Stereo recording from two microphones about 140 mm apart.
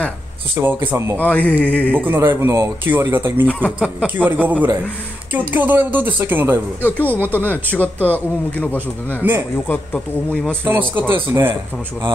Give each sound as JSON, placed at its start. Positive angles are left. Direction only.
{"t": 0.6, "sound": "speech", "side_deg": -15}
{"t": 1.1, "sound": "speech", "side_deg": 10}
{"t": 2.0, "sound": "speech", "side_deg": -15}
{"t": 3.4, "sound": "speech", "side_deg": 10}
{"t": 3.8, "sound": "speech", "side_deg": -10}
{"t": 7.3, "sound": "speech", "side_deg": 10}
{"t": 9.2, "sound": "speech", "side_deg": -15}
{"t": 9.7, "sound": "speech", "side_deg": 5}
{"t": 10.6, "sound": "speech", "side_deg": -15}